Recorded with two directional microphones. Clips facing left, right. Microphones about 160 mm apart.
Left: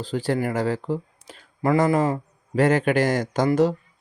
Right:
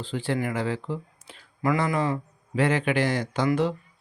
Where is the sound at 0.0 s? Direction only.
40° left (ahead or behind).